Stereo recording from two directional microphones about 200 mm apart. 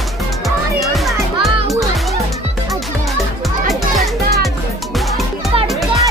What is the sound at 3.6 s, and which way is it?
Music, centre (ahead or behind).